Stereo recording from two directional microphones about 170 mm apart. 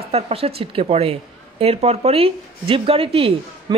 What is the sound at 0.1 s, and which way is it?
Speech, 35° right (ahead or behind).